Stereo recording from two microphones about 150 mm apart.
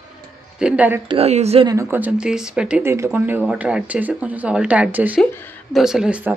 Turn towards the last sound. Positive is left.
turn(degrees=-10)  # may be behind; listen again after turning